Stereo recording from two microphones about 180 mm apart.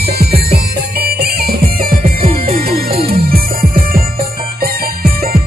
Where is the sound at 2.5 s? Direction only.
55° right (ahead or behind).